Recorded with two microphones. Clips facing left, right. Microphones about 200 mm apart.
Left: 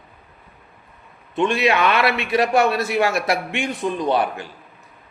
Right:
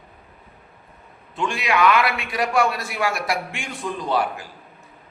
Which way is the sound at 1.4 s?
25° left (ahead or behind).